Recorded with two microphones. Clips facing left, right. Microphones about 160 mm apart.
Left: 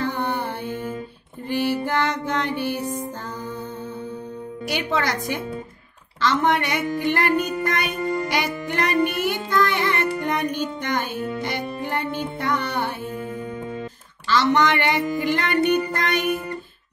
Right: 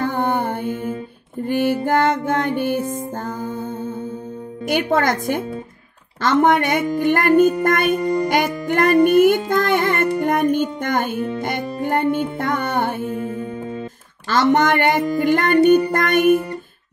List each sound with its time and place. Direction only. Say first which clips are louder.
0.0 s mantra: right 5 dB; 50° right (ahead or behind)
1.4 s music: right 4 dB; 50° right (ahead or behind)
4.6 s music: right 6 dB; 50° right (ahead or behind)
14.2 s music: right 3 dB; 50° right (ahead or behind)